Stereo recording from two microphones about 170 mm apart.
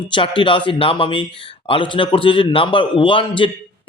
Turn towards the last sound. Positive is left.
turn(degrees=30)  # may be behind; listen again after turning